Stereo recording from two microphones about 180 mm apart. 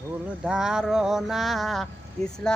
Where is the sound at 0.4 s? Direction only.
5° right (ahead or behind).